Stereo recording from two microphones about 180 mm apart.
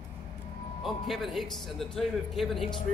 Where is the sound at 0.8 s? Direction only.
Centre (ahead or behind).